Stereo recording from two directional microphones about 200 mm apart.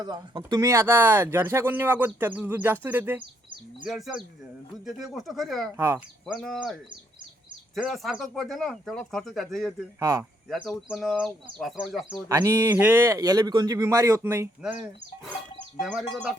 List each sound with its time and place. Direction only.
0.0 s speech: 20° right (ahead or behind); by 5.6 s centre (ahead or behind)
5.7 s speech: 15° right (ahead or behind)
6.2 s speech: centre (ahead or behind)
7.8 s speech: centre (ahead or behind)
10.0 s speech: 20° right (ahead or behind)
10.5 s speech: centre (ahead or behind)
12.3 s speech: 15° right (ahead or behind)